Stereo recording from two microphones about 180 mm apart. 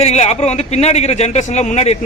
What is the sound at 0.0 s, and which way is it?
A man's voice, 35° left (ahead or behind).